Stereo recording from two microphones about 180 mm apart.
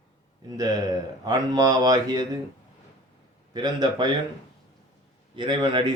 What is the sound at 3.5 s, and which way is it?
Speech, 25° right (ahead or behind).